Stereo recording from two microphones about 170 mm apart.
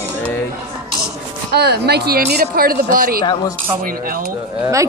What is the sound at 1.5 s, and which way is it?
Speech, 70° right (ahead or behind).